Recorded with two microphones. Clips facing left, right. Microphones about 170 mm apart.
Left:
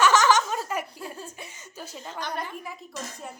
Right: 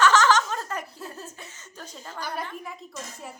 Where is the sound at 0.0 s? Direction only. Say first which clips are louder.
Even; 10° left (ahead or behind).